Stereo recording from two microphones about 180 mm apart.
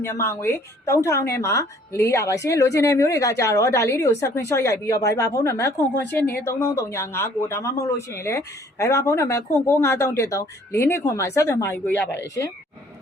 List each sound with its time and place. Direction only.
0.0 s speech: 15° left (ahead or behind)